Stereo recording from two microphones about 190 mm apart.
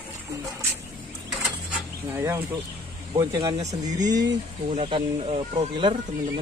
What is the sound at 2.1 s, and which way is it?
Speech, 15° right (ahead or behind).